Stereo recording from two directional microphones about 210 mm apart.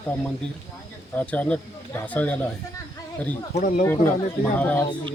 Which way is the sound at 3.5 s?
40° left (ahead or behind).